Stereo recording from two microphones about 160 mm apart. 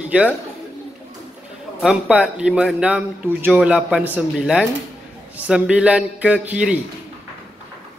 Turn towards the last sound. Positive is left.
turn(degrees=-5)  # may be behind; listen again after turning